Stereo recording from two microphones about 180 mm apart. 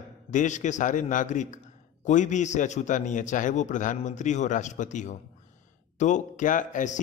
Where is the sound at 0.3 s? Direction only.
45° left (ahead or behind).